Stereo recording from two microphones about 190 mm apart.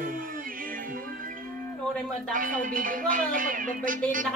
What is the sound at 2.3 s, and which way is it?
Speech, 45° right (ahead or behind).